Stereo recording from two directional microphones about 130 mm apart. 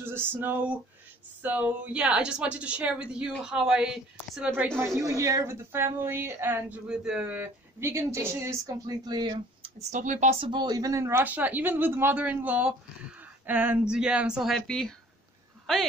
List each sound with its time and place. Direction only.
0.0 s a woman's voice: 15° right (ahead or behind)
4.5 s a woman's voice: 20° right (ahead or behind)
9.8 s a woman's voice: 70° right (ahead or behind)
10.4 s a woman's voice: 35° right (ahead or behind); by 15.9 s centre (ahead or behind)